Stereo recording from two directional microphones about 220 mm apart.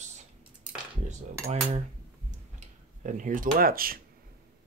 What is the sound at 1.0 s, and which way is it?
Speech, 30° right (ahead or behind).